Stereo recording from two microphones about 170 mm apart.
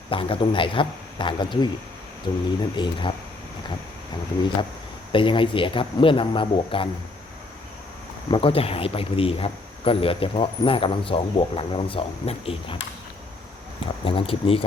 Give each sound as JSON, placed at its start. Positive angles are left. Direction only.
{"t": 0.1, "sound": "speech", "side_deg": 30}
{"t": 5.1, "sound": "speech", "side_deg": 30}
{"t": 8.3, "sound": "speech", "side_deg": 35}
{"t": 14.0, "sound": "speech", "side_deg": 35}